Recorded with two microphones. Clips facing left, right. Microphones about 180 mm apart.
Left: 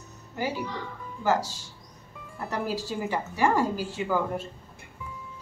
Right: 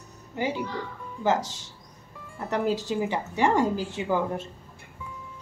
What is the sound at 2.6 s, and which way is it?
A woman's voice, 20° right (ahead or behind).